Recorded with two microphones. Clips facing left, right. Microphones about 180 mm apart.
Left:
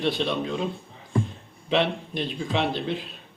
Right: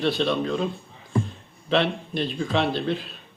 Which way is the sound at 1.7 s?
15° left (ahead or behind).